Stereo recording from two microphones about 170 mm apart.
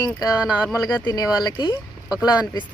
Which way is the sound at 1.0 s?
25° left (ahead or behind).